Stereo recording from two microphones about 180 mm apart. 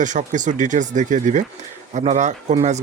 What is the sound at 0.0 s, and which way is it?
Speech, 45° right (ahead or behind).